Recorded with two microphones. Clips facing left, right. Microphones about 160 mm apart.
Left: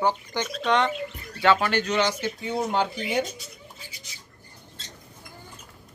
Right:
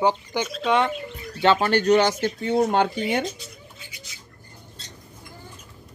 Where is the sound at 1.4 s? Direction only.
25° right (ahead or behind); by 3.2 s 60° right (ahead or behind).